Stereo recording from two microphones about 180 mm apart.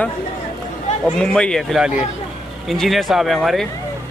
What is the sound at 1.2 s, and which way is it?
Speech, 5° left (ahead or behind).